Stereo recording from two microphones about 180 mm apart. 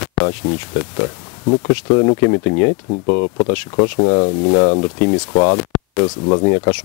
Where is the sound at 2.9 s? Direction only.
30° left (ahead or behind).